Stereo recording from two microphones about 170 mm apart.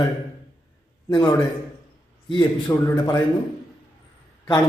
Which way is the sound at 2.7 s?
15° left (ahead or behind).